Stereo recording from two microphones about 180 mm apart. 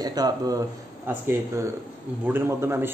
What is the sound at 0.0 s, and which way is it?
A man's voice, 20° right (ahead or behind).